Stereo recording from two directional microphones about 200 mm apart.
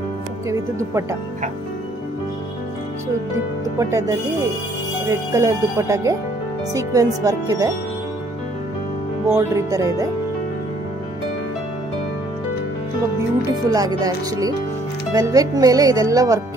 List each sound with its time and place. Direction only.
0.5 s speech: 15° right (ahead or behind)
3.7 s speech: 15° right (ahead or behind)
9.3 s speech: 15° right (ahead or behind)
13.7 s speech: 20° right (ahead or behind)